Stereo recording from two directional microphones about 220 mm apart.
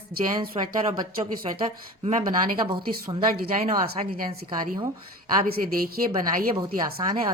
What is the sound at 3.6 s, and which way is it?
Speech, 30° right (ahead or behind).